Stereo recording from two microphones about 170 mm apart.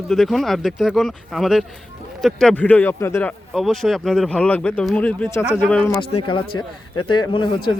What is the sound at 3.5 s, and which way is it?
Speech, centre (ahead or behind).